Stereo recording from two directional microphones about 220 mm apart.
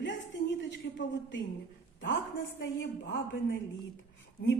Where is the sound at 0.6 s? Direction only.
55° left (ahead or behind).